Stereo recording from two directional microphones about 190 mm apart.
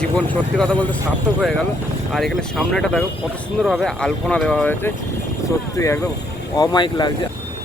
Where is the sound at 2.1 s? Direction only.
Centre (ahead or behind); by 7.1 s 20° left (ahead or behind).